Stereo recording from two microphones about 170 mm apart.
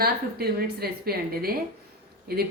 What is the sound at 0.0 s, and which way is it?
A woman's voice, 65° right (ahead or behind).